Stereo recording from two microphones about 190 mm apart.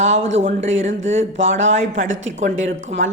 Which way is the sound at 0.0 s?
40° right (ahead or behind).